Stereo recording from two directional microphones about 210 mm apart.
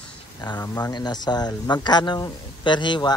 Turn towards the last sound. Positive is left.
turn(degrees=20)  # may be behind; listen again after turning